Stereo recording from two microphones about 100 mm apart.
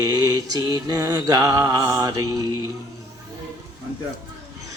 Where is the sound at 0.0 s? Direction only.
40° right (ahead or behind).